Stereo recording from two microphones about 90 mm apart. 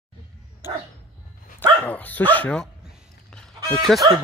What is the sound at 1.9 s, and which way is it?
Speech, 20° left (ahead or behind).